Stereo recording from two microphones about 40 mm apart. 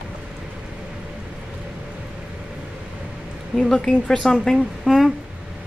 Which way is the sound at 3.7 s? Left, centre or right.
Centre.